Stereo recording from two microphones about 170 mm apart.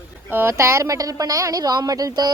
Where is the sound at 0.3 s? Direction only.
15° right (ahead or behind).